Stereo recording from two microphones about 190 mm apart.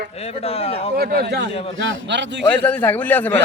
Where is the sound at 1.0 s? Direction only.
60° right (ahead or behind).